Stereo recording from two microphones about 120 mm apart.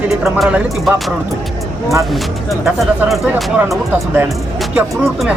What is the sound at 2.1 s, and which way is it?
Speech, centre (ahead or behind).